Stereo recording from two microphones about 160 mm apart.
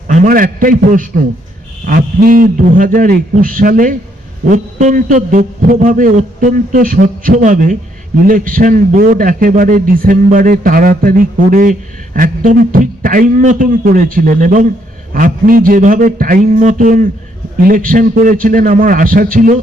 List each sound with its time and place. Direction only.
0.1 s a man's voice: 55° right (ahead or behind)